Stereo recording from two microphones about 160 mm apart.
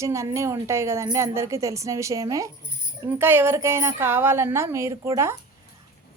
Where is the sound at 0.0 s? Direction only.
20° right (ahead or behind).